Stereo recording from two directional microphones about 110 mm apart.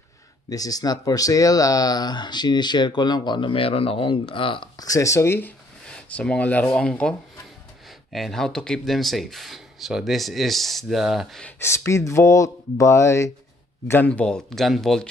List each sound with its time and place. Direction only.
0.5 s speech: 35° left (ahead or behind); by 4.6 s 50° left (ahead or behind)
4.7 s speech: 30° left (ahead or behind)
5.9 s speech: 10° left (ahead or behind)
11.6 s speech: 25° left (ahead or behind); by 15.0 s 5° left (ahead or behind)